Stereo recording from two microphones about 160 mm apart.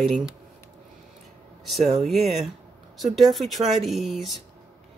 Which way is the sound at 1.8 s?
40° right (ahead or behind).